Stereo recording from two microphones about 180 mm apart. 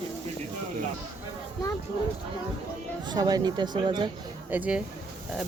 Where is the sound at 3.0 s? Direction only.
20° right (ahead or behind).